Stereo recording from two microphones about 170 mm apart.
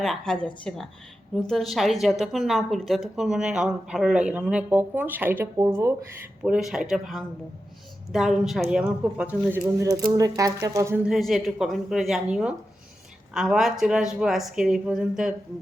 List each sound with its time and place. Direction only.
0.0 s a woman's voice: centre (ahead or behind); by 5.9 s 20° right (ahead or behind)
6.4 s a woman's voice: 5° right (ahead or behind)
11.0 s a woman's voice: centre (ahead or behind)